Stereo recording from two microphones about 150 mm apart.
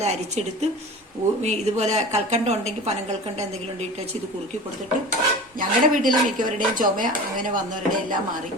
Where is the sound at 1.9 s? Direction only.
45° right (ahead or behind).